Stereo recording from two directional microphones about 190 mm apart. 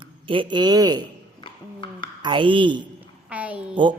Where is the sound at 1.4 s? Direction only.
25° left (ahead or behind).